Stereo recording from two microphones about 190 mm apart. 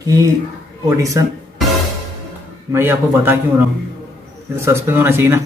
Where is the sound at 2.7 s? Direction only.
10° right (ahead or behind).